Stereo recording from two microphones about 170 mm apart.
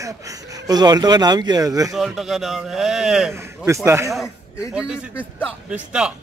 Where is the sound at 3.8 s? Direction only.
15° right (ahead or behind).